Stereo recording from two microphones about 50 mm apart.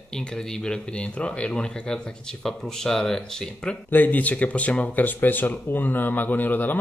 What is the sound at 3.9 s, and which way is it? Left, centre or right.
A man's voice, left.